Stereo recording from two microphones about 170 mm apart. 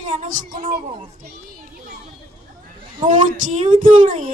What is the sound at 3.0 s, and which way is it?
Speech, 50° right (ahead or behind).